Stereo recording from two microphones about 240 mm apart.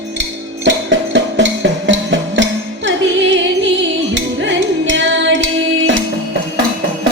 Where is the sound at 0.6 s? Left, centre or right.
Right.